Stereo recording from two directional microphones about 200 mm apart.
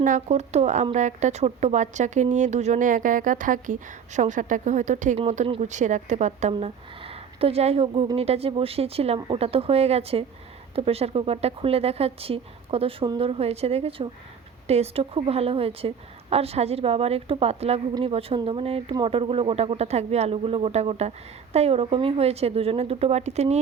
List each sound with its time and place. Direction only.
0.0 s a woman's voice: 35° right (ahead or behind)